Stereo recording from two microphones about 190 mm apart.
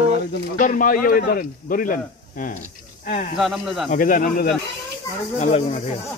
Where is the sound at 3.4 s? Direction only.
Centre (ahead or behind).